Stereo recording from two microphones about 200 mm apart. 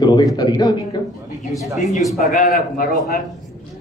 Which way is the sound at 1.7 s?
35° left (ahead or behind).